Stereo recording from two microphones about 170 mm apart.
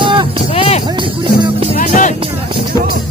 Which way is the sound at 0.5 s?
35° left (ahead or behind).